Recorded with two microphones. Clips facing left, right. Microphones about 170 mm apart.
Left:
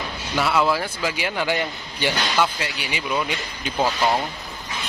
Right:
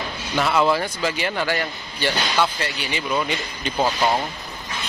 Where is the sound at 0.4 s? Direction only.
5° left (ahead or behind).